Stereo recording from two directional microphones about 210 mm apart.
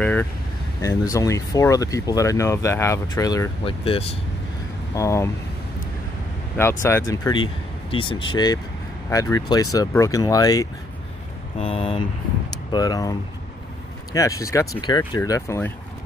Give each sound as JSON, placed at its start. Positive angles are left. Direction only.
{"t": 0.0, "sound": "vehicle", "side_deg": 10}
{"t": 0.8, "sound": "speech", "side_deg": 15}
{"t": 4.9, "sound": "speech", "side_deg": 15}
{"t": 6.8, "sound": "speech", "side_deg": 15}
{"t": 12.7, "sound": "speech", "side_deg": 15}